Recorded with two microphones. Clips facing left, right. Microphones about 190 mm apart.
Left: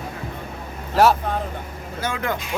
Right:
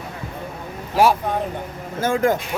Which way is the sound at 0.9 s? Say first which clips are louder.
Even; 10° right (ahead or behind).